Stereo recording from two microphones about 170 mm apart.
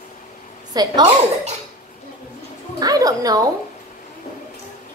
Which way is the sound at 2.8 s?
20° right (ahead or behind).